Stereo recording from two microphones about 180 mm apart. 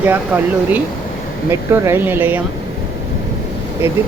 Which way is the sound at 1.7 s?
15° right (ahead or behind).